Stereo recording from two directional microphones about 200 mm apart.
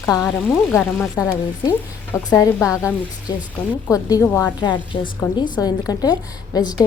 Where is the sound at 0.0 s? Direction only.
15° left (ahead or behind).